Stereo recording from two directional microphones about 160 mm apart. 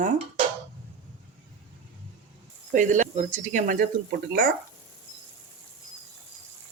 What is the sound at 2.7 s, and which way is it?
Speech, 50° right (ahead or behind).